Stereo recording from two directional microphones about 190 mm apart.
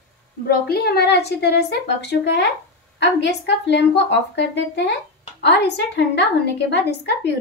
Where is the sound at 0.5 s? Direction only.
55° left (ahead or behind).